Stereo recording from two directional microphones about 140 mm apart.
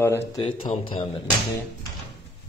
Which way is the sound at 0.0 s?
15° left (ahead or behind).